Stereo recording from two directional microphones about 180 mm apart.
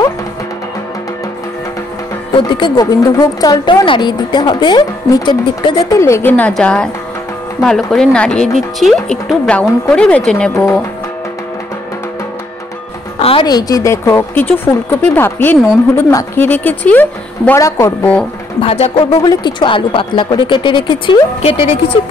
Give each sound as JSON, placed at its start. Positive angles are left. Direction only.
{"t": 2.3, "sound": "a woman's voice", "side_deg": 25}
{"t": 13.2, "sound": "a woman's voice", "side_deg": 30}
{"t": 18.6, "sound": "a woman's voice", "side_deg": 35}